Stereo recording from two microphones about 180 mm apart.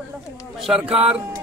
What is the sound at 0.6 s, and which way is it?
Speech, 5° right (ahead or behind).